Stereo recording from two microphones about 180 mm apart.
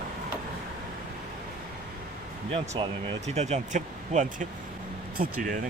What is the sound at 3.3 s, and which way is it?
Speech, 40° right (ahead or behind).